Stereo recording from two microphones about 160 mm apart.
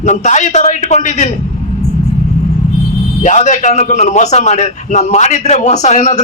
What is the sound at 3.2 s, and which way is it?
A man's voice, 50° left (ahead or behind).